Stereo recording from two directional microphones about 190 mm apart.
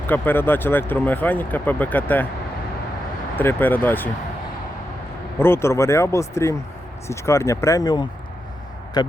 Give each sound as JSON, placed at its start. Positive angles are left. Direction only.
{"t": 0.1, "sound": "speech", "side_deg": 10}
{"t": 3.3, "sound": "speech", "side_deg": 10}
{"t": 5.4, "sound": "speech", "side_deg": 15}